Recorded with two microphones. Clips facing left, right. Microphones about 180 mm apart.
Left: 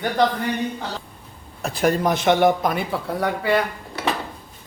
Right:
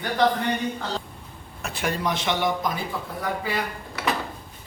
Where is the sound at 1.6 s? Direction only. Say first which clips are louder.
Left 7 dB; 40° left (ahead or behind); by 3.6 s 70° left (ahead or behind).